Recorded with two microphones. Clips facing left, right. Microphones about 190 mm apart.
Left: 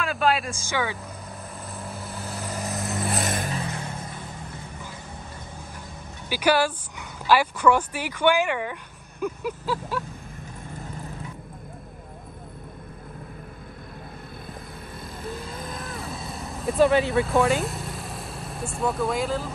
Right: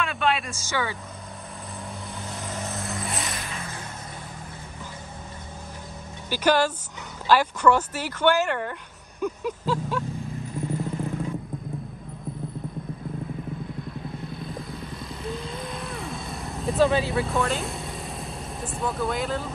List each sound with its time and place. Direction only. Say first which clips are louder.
0.0 s speech: left 2 dB; centre (ahead or behind)
0.6 s speech: left 1 dB; 15° left (ahead or behind)
1.9 s vehicle: left 2 dB; 5° left (ahead or behind)
3.2 s a sound: left 6 dB; 45° left (ahead or behind)
6.3 s speech: even; 10° left (ahead or behind)
15.3 s vehicle: right 2 dB; 50° left (ahead or behind)
15.7 s vehicle: right 1 dB; centre (ahead or behind)
16.7 s speech: left 2 dB; 15° left (ahead or behind)
17.1 s speech: left 4 dB; centre (ahead or behind)